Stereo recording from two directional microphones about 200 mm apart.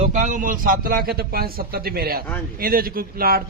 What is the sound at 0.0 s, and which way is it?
A man's voice, 35° right (ahead or behind).